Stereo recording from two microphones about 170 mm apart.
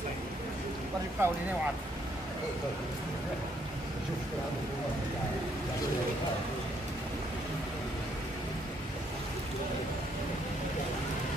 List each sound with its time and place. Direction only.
1.2 s speech: 15° right (ahead or behind)